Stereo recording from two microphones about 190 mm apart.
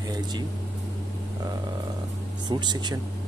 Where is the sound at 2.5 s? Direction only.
25° right (ahead or behind).